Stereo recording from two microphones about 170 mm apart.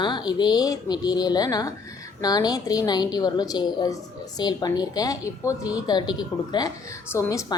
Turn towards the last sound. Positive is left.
turn(degrees=20)  # may be behind; listen again after turning